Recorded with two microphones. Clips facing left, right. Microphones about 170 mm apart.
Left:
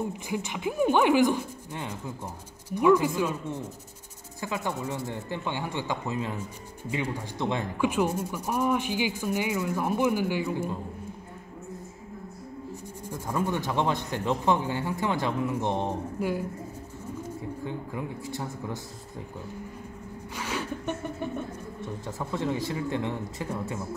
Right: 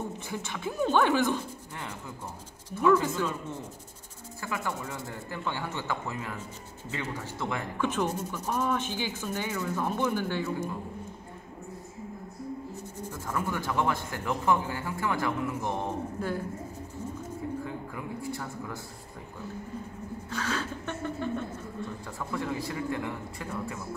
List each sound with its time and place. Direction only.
0.3 s speech: 15° left (ahead or behind)
4.4 s speech: 20° left (ahead or behind)
6.1 s speech: 30° left (ahead or behind)
6.9 s speech: 15° left (ahead or behind)
13.1 s speech: 20° left (ahead or behind)
17.6 s a man's voice: 20° left (ahead or behind)
20.3 s speech: 15° left (ahead or behind)